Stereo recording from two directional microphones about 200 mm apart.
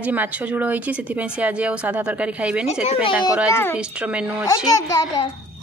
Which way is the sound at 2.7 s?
30° left (ahead or behind).